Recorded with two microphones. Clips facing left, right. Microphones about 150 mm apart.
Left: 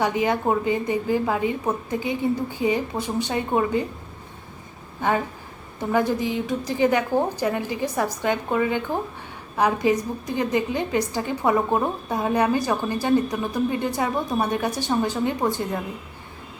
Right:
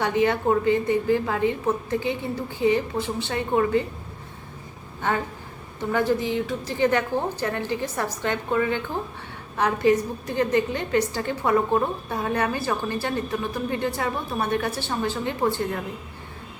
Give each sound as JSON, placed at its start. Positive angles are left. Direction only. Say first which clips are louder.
{"t": 0.0, "sound": "a woman's voice", "louder": "even", "side_deg": 15}
{"t": 5.9, "sound": "a woman's voice", "louder": "left 1 dB", "side_deg": 15}